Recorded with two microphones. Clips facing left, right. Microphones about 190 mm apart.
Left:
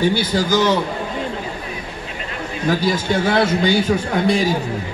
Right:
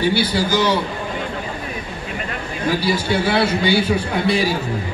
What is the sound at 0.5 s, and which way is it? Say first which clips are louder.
Speech: left 3 dB; 50° left (ahead or behind).